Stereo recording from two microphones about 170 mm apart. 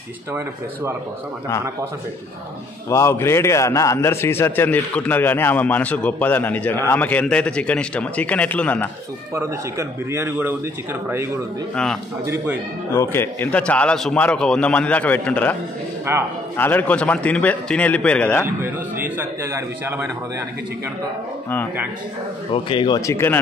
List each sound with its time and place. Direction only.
2.9 s a man's voice: 15° left (ahead or behind)
9.3 s a man's voice: 15° right (ahead or behind)
11.7 s a man's voice: 5° left (ahead or behind)
12.9 s a man's voice: 15° left (ahead or behind)
16.1 s a man's voice: 15° right (ahead or behind)
16.5 s a man's voice: 10° left (ahead or behind)
18.4 s a man's voice: 10° right (ahead or behind)
22.5 s speech: 30° left (ahead or behind); by 23.4 s 15° left (ahead or behind)